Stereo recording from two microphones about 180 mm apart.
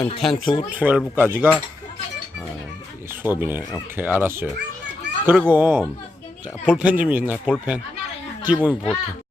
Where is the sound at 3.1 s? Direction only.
10° right (ahead or behind).